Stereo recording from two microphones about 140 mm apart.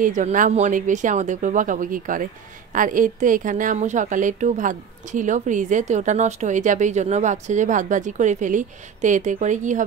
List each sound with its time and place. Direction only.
0.0 s a woman's voice: 65° right (ahead or behind)